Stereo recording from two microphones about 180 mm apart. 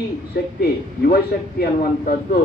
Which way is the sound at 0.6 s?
60° left (ahead or behind).